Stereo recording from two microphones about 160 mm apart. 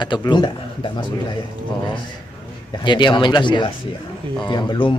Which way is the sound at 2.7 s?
30° left (ahead or behind).